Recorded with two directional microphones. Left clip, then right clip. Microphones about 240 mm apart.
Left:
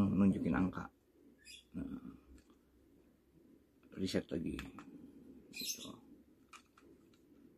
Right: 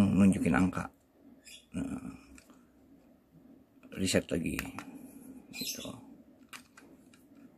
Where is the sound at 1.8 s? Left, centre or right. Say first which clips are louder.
Right 8 dB; right.